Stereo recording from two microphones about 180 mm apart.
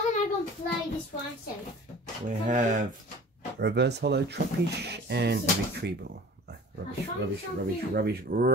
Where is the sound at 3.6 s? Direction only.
70° right (ahead or behind).